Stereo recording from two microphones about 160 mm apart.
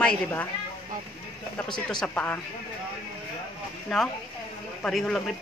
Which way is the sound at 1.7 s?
5° left (ahead or behind).